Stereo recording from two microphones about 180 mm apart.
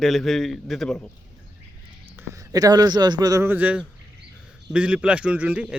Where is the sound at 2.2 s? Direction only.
20° right (ahead or behind).